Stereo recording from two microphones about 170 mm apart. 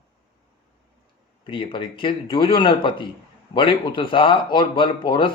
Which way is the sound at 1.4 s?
30° left (ahead or behind).